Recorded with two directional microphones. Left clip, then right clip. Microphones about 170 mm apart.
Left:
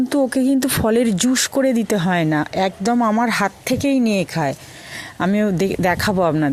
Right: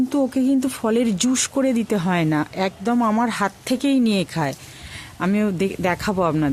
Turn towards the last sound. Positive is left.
turn(degrees=25)  # may be behind; listen again after turning